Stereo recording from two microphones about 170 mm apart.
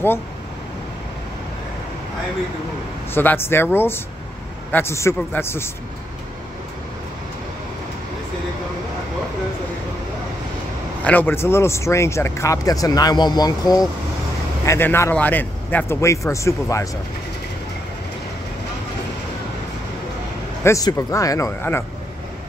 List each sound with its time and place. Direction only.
3.2 s speech: 15° left (ahead or behind)
11.1 s speech: 10° left (ahead or behind)
20.6 s speech: 15° left (ahead or behind)